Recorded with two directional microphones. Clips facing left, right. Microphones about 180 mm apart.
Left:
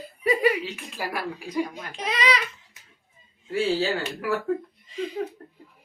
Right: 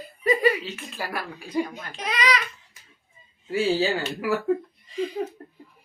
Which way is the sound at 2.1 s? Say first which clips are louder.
Even; 25° left (ahead or behind).